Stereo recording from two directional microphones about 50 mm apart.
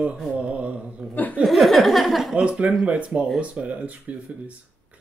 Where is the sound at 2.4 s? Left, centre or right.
Right.